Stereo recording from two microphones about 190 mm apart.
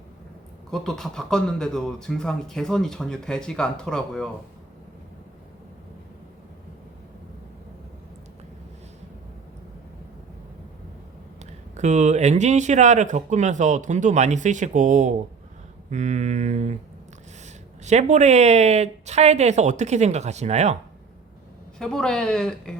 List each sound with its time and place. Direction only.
0.7 s speech: centre (ahead or behind)
11.8 s speech: 40° right (ahead or behind)
17.8 s speech: 40° right (ahead or behind)
21.8 s speech: 5° left (ahead or behind)